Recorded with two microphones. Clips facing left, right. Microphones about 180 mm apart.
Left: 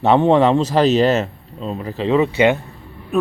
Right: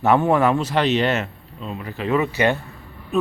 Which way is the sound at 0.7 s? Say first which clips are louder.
Left 5 dB; 40° left (ahead or behind).